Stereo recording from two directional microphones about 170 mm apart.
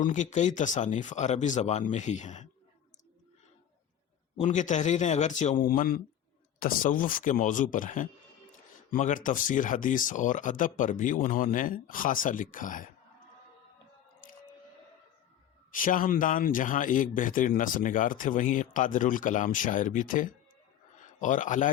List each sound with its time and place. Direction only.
0.0 s speech: 45° left (ahead or behind)
4.4 s speech: 45° left (ahead or behind)
15.7 s speech: 55° left (ahead or behind)